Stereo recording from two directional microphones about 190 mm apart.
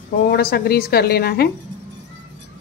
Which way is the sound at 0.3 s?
50° left (ahead or behind).